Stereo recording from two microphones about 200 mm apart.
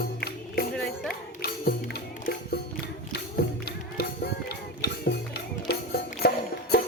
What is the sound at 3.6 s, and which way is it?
Music, 50° left (ahead or behind).